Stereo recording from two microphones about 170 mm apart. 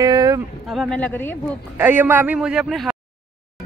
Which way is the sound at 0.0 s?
20° right (ahead or behind).